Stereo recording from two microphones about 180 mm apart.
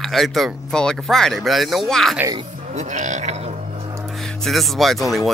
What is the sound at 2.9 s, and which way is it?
Speech, 40° right (ahead or behind).